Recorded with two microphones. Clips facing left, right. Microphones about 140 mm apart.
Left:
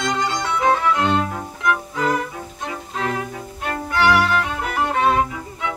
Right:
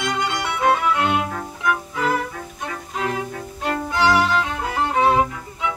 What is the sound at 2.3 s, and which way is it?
Music, 15° left (ahead or behind).